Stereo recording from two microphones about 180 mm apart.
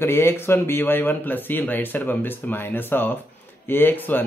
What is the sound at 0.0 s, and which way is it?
Speech, 15° left (ahead or behind).